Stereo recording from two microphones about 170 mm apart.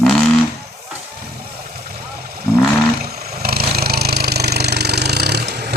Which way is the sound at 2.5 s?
15° left (ahead or behind).